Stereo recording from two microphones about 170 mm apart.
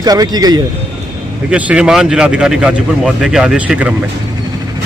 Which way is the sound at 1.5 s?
5° right (ahead or behind).